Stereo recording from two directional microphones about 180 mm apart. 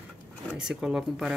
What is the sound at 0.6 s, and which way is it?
Speech, 5° right (ahead or behind).